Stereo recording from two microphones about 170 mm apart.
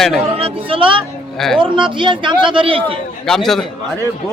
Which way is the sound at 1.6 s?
30° right (ahead or behind).